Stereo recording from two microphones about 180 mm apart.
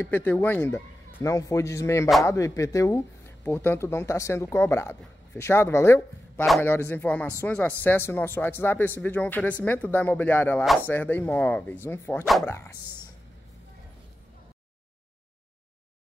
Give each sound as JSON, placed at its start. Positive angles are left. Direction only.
{"t": 0.0, "sound": "speech", "side_deg": 10}
{"t": 12.3, "sound": "speech", "side_deg": 0}
{"t": 12.5, "sound": "speech", "side_deg": 20}